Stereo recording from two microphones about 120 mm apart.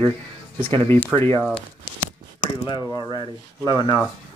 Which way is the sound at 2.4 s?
40° left (ahead or behind).